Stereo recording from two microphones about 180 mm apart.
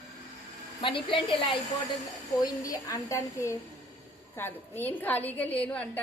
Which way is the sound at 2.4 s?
15° left (ahead or behind).